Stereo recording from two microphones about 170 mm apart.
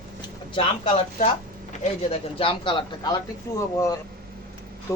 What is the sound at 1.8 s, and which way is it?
Speech, 35° left (ahead or behind).